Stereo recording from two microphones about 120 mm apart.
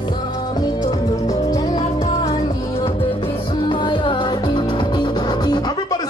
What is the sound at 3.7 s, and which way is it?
Music, 40° left (ahead or behind).